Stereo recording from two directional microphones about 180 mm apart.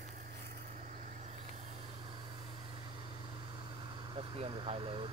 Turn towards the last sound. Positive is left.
turn(degrees=-30)  # may be behind; listen again after turning